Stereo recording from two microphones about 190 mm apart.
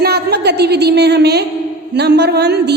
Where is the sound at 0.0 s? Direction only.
55° right (ahead or behind).